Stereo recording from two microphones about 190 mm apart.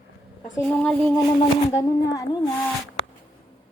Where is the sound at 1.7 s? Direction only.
15° left (ahead or behind).